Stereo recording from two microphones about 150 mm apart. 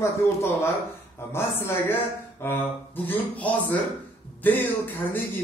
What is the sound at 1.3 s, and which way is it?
Speech, 15° left (ahead or behind).